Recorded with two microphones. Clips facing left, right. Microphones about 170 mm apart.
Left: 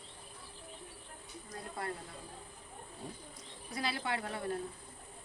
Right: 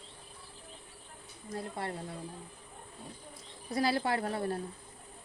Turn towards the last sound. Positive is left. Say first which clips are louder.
# right 5 dB
turn(degrees=-40)  # may be behind; listen again after turning